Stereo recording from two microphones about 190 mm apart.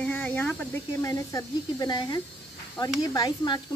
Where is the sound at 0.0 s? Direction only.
10° left (ahead or behind).